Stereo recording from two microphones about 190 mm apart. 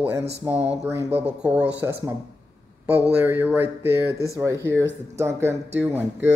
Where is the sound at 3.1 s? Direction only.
10° right (ahead or behind).